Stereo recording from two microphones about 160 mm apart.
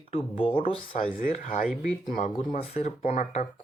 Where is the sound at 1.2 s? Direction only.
50° left (ahead or behind).